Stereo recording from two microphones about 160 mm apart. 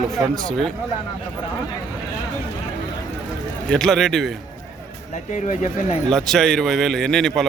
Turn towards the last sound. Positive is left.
turn(degrees=5)  # may be behind; listen again after turning